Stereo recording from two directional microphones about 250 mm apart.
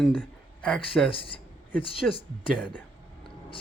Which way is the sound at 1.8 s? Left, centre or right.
Left.